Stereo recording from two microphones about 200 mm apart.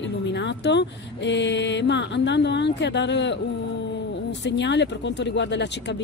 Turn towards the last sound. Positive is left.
turn(degrees=60)  # may be behind; listen again after turning